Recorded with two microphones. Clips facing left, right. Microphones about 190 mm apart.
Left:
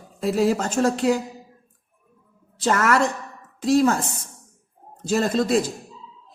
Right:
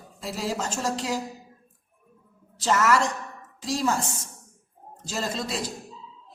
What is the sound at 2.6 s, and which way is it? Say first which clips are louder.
Speech: left 3 dB; 55° left (ahead or behind).